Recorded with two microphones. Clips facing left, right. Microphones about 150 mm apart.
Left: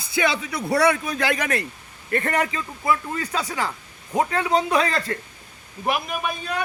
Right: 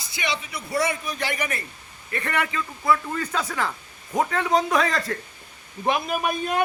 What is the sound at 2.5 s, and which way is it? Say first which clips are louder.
A man's voice: right 1 dB; 20° left (ahead or behind).